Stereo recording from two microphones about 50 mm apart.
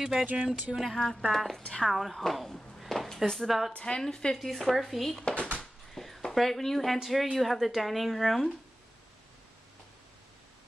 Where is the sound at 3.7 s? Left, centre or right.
Centre.